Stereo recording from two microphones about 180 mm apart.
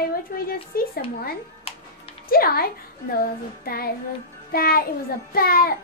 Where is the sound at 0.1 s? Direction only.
55° left (ahead or behind).